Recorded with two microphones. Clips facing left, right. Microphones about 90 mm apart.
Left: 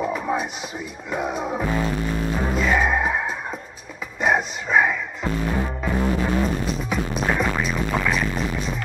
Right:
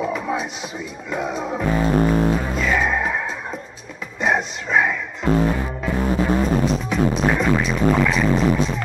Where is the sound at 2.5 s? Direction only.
10° left (ahead or behind).